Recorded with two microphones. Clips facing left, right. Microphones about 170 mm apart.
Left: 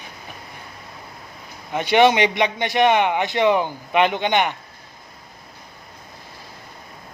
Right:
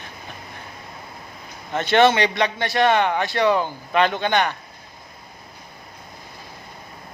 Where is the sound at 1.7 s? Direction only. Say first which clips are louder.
Left 1 dB; 10° left (ahead or behind).